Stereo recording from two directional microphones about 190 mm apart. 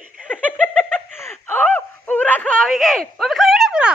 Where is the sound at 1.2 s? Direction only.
10° left (ahead or behind).